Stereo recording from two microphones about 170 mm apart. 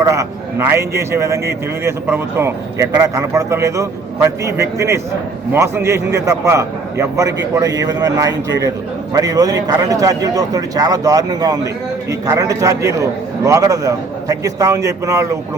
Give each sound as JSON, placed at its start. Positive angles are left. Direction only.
{"t": 0.0, "sound": "a man's voice", "side_deg": -20}